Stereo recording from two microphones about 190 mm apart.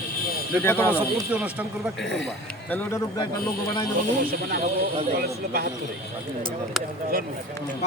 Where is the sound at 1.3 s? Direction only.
5° right (ahead or behind).